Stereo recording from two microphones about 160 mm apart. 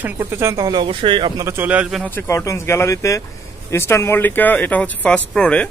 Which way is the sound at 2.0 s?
15° left (ahead or behind).